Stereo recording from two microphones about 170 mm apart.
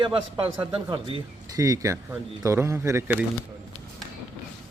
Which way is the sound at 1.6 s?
20° right (ahead or behind).